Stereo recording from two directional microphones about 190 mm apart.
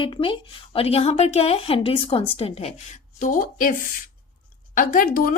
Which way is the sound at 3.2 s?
45° left (ahead or behind).